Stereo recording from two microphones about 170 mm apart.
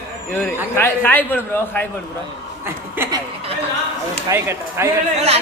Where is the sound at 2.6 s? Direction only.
15° right (ahead or behind).